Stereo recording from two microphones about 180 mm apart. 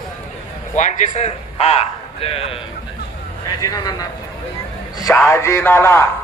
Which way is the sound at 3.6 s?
20° left (ahead or behind).